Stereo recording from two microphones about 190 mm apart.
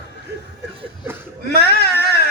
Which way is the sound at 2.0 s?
55° left (ahead or behind).